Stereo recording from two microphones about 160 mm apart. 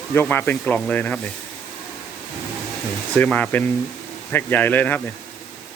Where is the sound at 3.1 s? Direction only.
10° left (ahead or behind).